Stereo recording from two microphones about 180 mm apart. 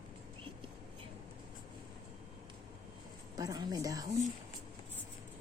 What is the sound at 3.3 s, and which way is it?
Speech, 20° right (ahead or behind).